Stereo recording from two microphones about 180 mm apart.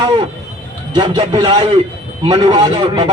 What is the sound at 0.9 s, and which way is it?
Speech, 25° right (ahead or behind).